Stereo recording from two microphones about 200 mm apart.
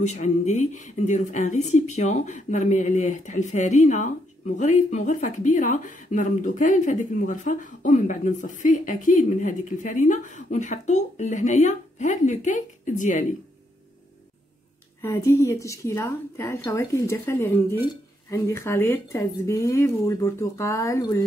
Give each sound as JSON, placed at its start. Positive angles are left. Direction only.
{"t": 0.0, "sound": "a woman's voice", "side_deg": 35}
{"t": 15.0, "sound": "speech", "side_deg": 15}